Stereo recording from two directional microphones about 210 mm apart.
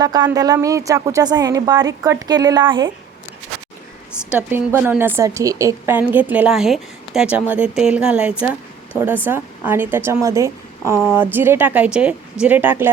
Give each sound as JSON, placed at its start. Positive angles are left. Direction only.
{"t": 0.0, "sound": "a woman's voice", "side_deg": -20}
{"t": 4.2, "sound": "a woman's voice", "side_deg": -5}